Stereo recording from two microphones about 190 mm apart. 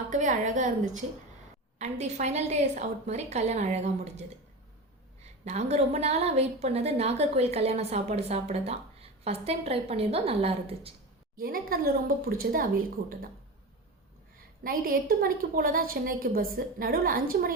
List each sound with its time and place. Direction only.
0.1 s a woman's voice: 40° right (ahead or behind)
1.8 s a woman's voice: 35° right (ahead or behind)
11.3 s a woman's voice: 50° right (ahead or behind)
14.6 s a woman's voice: 50° right (ahead or behind)